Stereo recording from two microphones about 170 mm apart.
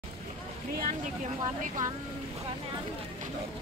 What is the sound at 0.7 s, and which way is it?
Speech, 50° right (ahead or behind).